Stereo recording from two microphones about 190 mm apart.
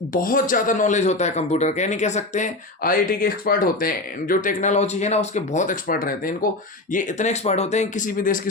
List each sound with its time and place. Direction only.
0.1 s a man's voice: 45° left (ahead or behind)